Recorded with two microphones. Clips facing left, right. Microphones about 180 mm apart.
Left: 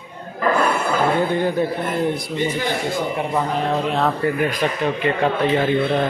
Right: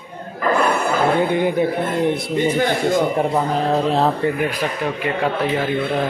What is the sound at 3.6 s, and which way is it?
Speech, 35° right (ahead or behind).